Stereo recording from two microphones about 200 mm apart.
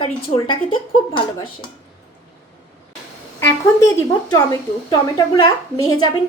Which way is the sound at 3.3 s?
15° left (ahead or behind).